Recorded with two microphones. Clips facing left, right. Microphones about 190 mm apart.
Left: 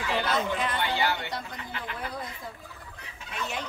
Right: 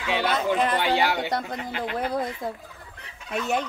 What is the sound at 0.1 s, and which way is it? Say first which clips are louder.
Speech: right 5 dB; 70° right (ahead or behind).